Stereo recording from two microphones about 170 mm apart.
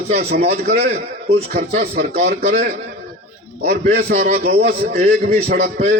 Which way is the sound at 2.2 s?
65° right (ahead or behind).